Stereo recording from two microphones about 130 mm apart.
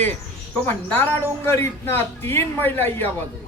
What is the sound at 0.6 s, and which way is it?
A man's voice, 15° left (ahead or behind).